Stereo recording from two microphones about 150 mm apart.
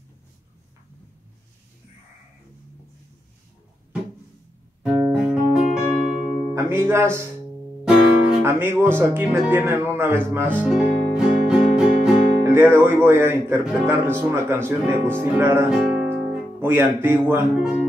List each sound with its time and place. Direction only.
5.1 s music: 5° right (ahead or behind)
6.5 s speech: 15° right (ahead or behind)
8.4 s speech: 15° right (ahead or behind)
10.7 s guitar: 5° right (ahead or behind)
12.5 s speech: 15° right (ahead or behind)